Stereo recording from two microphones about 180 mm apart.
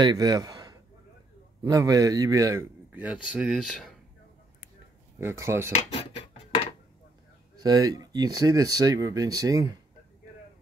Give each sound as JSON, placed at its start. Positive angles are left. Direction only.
{"t": 0.0, "sound": "a man's voice", "side_deg": -25}
{"t": 5.4, "sound": "a man's voice", "side_deg": -15}
{"t": 5.7, "sound": "cutlery", "side_deg": 35}
{"t": 7.5, "sound": "speech", "side_deg": -20}